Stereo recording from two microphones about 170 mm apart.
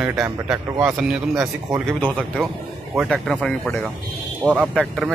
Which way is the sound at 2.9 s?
Centre (ahead or behind).